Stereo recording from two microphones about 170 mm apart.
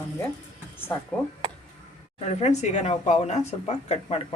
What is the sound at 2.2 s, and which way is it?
Speech, 40° left (ahead or behind).